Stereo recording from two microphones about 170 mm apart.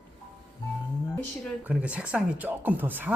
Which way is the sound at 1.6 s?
5° right (ahead or behind).